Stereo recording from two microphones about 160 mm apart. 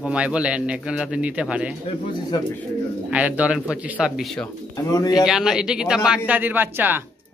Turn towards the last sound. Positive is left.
turn(degrees=-10)  # may be behind; listen again after turning